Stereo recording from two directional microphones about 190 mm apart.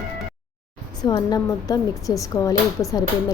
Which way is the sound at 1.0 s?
20° left (ahead or behind).